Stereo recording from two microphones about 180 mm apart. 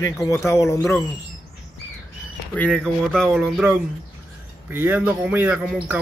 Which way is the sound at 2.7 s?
Centre (ahead or behind).